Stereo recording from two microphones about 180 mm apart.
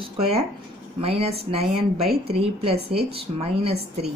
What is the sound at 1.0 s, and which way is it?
Speech, 35° right (ahead or behind).